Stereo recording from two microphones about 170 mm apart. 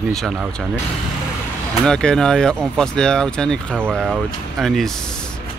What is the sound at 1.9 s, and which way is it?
Speech, 5° left (ahead or behind).